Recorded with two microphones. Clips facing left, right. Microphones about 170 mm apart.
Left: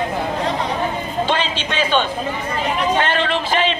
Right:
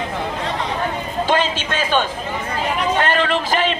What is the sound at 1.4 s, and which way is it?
Speech, 45° right (ahead or behind).